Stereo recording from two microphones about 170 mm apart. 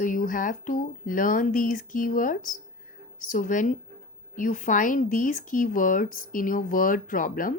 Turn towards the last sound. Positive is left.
turn(degrees=50)  # may be behind; listen again after turning